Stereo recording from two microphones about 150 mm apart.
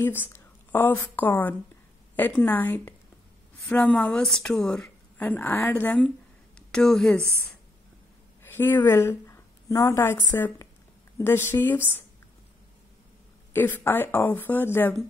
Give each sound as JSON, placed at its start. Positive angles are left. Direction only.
{"t": 0.0, "sound": "a woman's voice", "side_deg": 15}
{"t": 8.4, "sound": "a woman's voice", "side_deg": 15}
{"t": 13.5, "sound": "a woman's voice", "side_deg": 15}